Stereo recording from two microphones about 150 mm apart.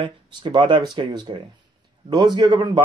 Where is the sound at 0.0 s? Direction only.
30° right (ahead or behind).